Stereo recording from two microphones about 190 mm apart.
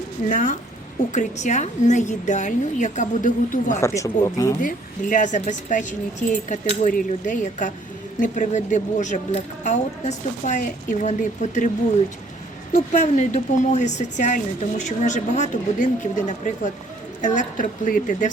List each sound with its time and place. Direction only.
0.3 s a woman's voice: 45° left (ahead or behind)
3.8 s speech: 15° left (ahead or behind)
4.6 s speech: 45° left (ahead or behind)
12.7 s a woman's voice: 40° left (ahead or behind)